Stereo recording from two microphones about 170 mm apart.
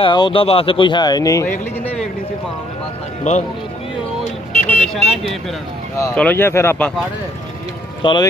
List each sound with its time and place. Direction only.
0.0 s speech: 30° left (ahead or behind)
3.3 s speech: 45° left (ahead or behind)
4.6 s speech: 5° left (ahead or behind)
8.0 s speech: 30° left (ahead or behind)